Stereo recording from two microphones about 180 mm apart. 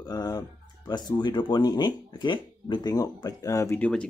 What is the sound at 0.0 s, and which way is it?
Speech, 20° left (ahead or behind).